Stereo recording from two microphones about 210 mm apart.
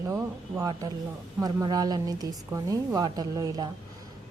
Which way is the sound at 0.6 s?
15° right (ahead or behind).